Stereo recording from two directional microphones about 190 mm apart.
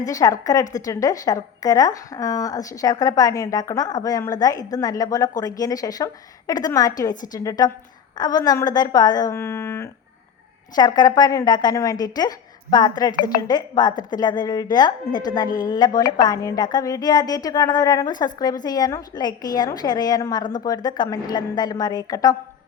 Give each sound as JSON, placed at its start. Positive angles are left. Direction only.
{"t": 0.0, "sound": "a woman's voice", "side_deg": 20}